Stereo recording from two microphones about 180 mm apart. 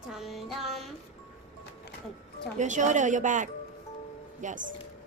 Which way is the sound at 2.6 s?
45° right (ahead or behind).